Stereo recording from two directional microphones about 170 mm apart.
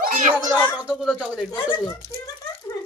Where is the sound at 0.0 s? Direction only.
55° right (ahead or behind).